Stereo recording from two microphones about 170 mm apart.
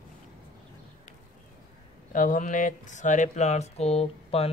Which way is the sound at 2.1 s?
50° left (ahead or behind).